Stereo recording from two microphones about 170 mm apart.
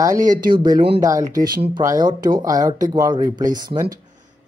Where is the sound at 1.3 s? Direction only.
55° right (ahead or behind).